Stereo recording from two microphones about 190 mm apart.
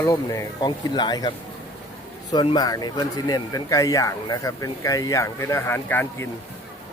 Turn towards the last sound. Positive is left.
turn(degrees=10)  # may be behind; listen again after turning